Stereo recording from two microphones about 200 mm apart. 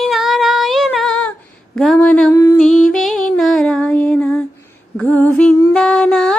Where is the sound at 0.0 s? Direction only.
Centre (ahead or behind).